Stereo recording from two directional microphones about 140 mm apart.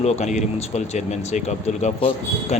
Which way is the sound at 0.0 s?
55° left (ahead or behind).